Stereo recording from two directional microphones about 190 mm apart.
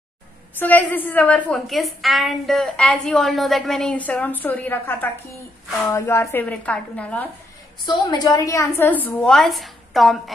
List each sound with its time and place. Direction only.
0.6 s a woman's voice: 10° left (ahead or behind)
7.8 s a woman's voice: 20° left (ahead or behind); by 10.3 s centre (ahead or behind)